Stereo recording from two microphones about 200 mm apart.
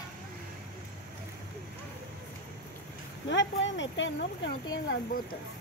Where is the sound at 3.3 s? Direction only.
65° left (ahead or behind).